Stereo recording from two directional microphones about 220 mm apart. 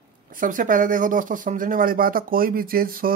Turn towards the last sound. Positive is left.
turn(degrees=-40)  # may be behind; listen again after turning